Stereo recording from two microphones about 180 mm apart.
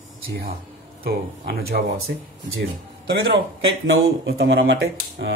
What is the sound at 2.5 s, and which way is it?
Speech, 70° right (ahead or behind).